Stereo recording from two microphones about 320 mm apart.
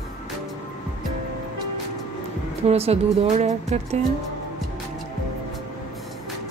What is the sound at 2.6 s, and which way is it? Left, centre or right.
Speech, centre.